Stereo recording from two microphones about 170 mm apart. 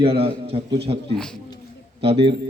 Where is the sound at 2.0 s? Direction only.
35° right (ahead or behind).